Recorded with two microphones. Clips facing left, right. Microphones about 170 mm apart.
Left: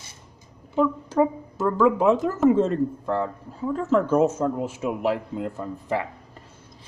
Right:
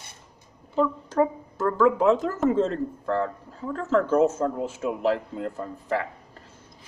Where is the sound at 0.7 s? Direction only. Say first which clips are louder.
Left 2 dB; 10° left (ahead or behind).